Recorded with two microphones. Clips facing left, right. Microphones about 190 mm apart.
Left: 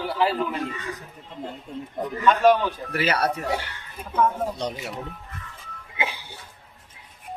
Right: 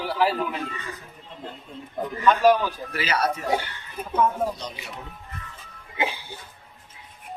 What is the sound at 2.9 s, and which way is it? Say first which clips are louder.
Speech: left 2 dB; 60° left (ahead or behind).